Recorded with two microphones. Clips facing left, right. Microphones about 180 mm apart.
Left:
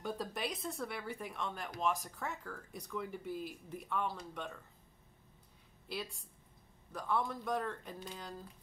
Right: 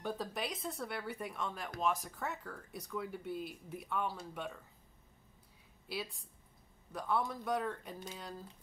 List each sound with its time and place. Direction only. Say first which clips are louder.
0.0 s speech: even; centre (ahead or behind)
5.9 s speech: right 1 dB; centre (ahead or behind)